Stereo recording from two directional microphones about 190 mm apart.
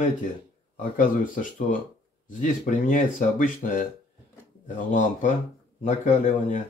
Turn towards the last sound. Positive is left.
turn(degrees=40)  # may be behind; listen again after turning